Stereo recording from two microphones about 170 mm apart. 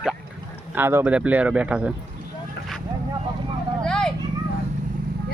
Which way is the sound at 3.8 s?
5° left (ahead or behind).